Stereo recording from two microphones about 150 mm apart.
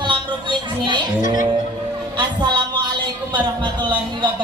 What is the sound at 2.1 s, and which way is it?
Speech, 30° right (ahead or behind).